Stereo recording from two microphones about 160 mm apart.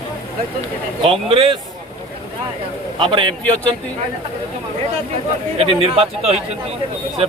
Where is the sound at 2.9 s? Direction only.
30° right (ahead or behind).